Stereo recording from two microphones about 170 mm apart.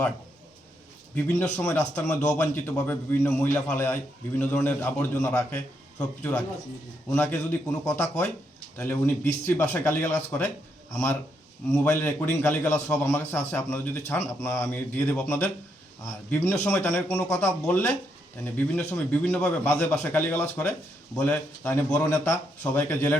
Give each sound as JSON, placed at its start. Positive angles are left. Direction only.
{"t": 1.1, "sound": "a man's voice", "side_deg": 10}
{"t": 11.7, "sound": "a man's voice", "side_deg": 10}